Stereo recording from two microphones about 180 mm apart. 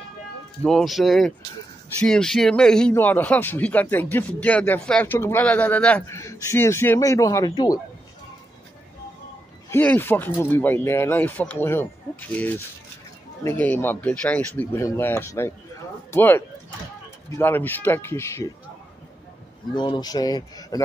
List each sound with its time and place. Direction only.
0.7 s speech: centre (ahead or behind); by 7.8 s 20° left (ahead or behind)
9.7 s speech: 10° left (ahead or behind)
19.7 s speech: 25° left (ahead or behind)